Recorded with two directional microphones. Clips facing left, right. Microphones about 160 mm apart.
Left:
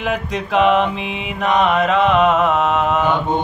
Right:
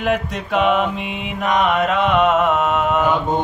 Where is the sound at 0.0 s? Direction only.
Centre (ahead or behind).